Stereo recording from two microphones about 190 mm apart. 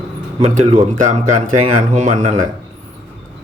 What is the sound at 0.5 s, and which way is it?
Speech, 40° right (ahead or behind).